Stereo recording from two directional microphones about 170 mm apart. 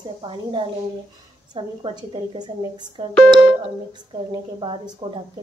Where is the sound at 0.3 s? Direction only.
30° right (ahead or behind).